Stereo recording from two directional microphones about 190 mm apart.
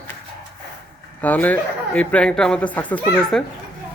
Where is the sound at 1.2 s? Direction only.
10° left (ahead or behind).